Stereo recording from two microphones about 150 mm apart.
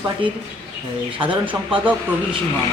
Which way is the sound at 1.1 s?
35° right (ahead or behind).